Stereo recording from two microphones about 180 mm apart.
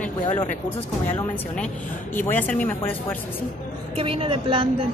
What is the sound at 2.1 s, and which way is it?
A woman's voice, 10° left (ahead or behind).